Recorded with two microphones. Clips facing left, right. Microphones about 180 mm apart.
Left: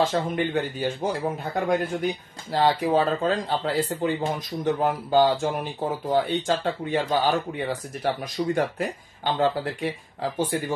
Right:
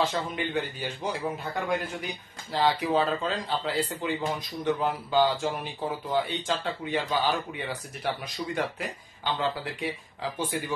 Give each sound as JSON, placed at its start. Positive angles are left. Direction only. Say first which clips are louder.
{"t": 0.0, "sound": "speech", "louder": "left 5 dB", "side_deg": 45}